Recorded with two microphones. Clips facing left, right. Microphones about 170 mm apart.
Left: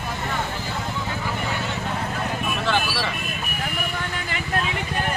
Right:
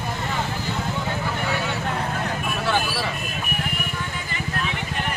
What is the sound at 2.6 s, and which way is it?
Vehicle, 10° right (ahead or behind).